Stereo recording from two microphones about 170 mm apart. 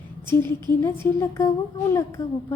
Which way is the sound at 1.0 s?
15° left (ahead or behind).